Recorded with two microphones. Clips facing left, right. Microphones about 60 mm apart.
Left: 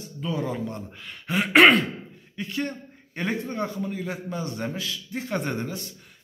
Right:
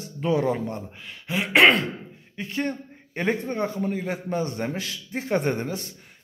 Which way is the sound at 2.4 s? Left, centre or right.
Right.